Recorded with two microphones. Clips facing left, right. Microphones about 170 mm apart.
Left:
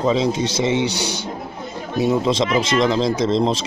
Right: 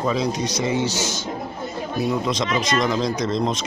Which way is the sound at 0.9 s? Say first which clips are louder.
Left 1 dB; 65° left (ahead or behind).